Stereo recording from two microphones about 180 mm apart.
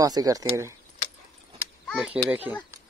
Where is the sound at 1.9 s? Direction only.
Centre (ahead or behind).